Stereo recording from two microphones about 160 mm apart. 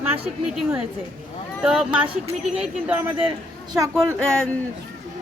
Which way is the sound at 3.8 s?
15° right (ahead or behind).